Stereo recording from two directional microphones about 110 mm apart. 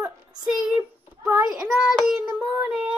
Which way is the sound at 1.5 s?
5° right (ahead or behind).